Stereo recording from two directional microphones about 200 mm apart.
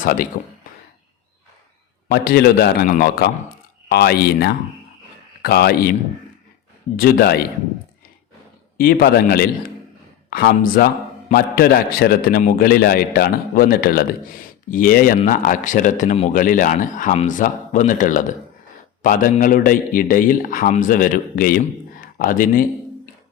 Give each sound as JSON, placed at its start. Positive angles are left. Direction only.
{"t": 0.0, "sound": "a man's voice", "side_deg": 45}
{"t": 2.0, "sound": "a man's voice", "side_deg": 50}
{"t": 8.8, "sound": "a man's voice", "side_deg": 45}